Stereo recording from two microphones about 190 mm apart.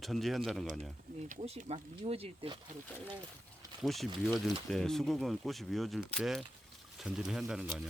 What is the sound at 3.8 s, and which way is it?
Speech, centre (ahead or behind).